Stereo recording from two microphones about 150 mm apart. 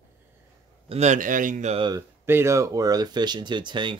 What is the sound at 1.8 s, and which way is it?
Speech, 25° right (ahead or behind).